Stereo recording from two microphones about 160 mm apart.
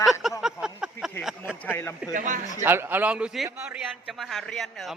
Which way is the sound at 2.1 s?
55° right (ahead or behind).